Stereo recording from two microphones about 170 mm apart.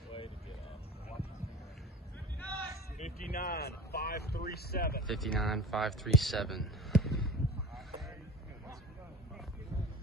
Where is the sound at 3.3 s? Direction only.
65° left (ahead or behind).